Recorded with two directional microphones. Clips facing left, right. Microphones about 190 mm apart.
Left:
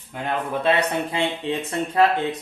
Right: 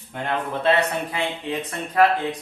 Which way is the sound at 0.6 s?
20° left (ahead or behind).